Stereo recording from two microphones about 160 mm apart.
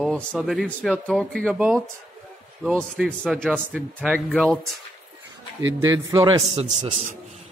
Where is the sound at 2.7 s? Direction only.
Centre (ahead or behind).